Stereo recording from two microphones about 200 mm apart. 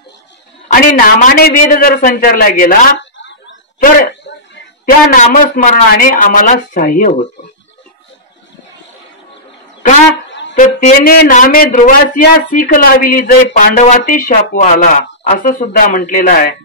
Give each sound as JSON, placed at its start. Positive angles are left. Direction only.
{"t": 0.7, "sound": "a man's voice", "side_deg": 40}
{"t": 4.2, "sound": "a sound", "side_deg": 60}
{"t": 4.8, "sound": "a man's voice", "side_deg": 40}
{"t": 10.6, "sound": "speech", "side_deg": 50}